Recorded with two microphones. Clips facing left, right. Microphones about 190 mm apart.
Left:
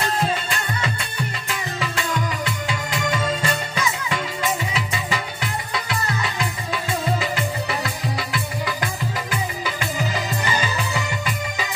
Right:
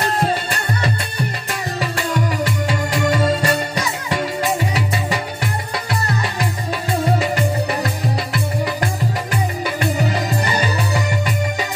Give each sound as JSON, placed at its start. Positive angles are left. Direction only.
{"t": 0.0, "sound": "music", "side_deg": -40}
{"t": 9.8, "sound": "music", "side_deg": -35}